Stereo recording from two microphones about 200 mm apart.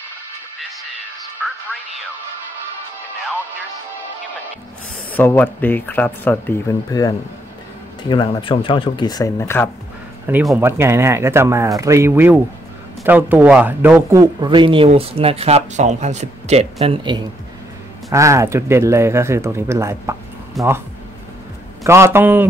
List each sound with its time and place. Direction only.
1.4 s speech: 5° right (ahead or behind)
5.1 s speech: 10° left (ahead or behind)
10.2 s a man's voice: 10° right (ahead or behind); by 17.2 s 25° right (ahead or behind)
18.1 s speech: 15° right (ahead or behind)
20.6 s speech: centre (ahead or behind)
21.8 s speech: 15° right (ahead or behind)